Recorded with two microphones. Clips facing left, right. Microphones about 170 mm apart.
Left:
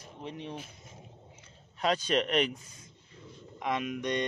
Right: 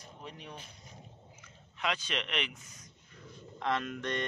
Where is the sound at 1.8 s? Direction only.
40° left (ahead or behind).